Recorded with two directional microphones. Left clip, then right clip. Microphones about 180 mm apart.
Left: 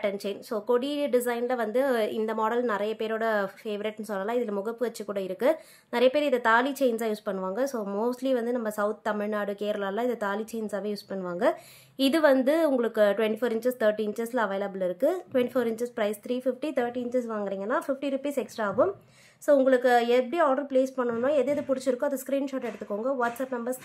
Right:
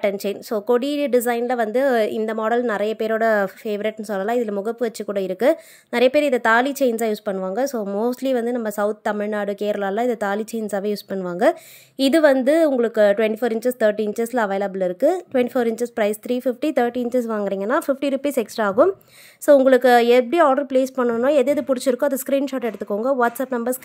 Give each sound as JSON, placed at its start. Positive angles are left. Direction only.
{"t": 0.0, "sound": "a woman's voice", "side_deg": -40}